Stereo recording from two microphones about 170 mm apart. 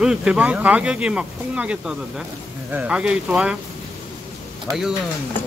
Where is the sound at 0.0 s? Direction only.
5° right (ahead or behind).